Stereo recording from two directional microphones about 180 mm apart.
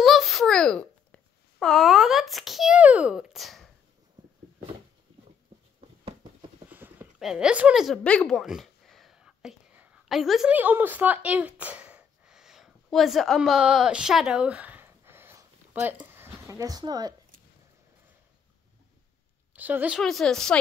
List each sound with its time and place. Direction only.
0.0 s babbling: centre (ahead or behind)
6.7 s a sound: 10° right (ahead or behind)
16.1 s speech: 15° right (ahead or behind)
19.5 s a woman's voice: 10° right (ahead or behind)
20.0 s a woman's voice: centre (ahead or behind)